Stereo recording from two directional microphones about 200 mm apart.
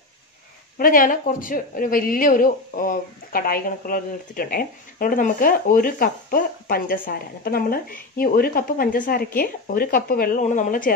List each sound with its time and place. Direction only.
0.7 s speech: 45° left (ahead or behind)